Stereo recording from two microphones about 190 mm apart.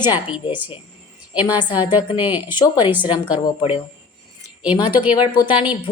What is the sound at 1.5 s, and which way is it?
Speech, 25° left (ahead or behind).